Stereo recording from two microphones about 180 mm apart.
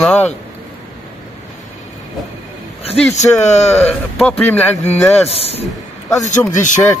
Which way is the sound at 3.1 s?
40° left (ahead or behind).